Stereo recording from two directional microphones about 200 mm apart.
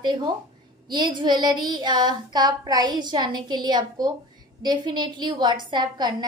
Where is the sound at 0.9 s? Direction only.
25° right (ahead or behind).